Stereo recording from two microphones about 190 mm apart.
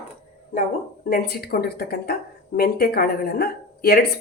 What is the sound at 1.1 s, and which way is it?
Speech, 55° left (ahead or behind).